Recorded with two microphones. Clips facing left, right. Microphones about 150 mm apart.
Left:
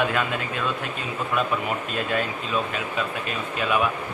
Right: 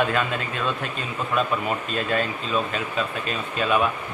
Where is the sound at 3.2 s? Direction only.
10° left (ahead or behind).